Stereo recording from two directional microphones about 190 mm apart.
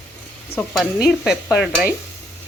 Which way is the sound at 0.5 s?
30° left (ahead or behind).